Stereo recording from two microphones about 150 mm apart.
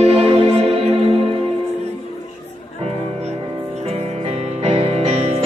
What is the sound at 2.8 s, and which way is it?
Music, 45° right (ahead or behind).